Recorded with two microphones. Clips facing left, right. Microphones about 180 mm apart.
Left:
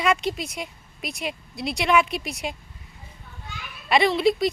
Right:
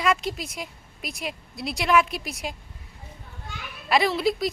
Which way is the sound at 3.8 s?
Centre (ahead or behind).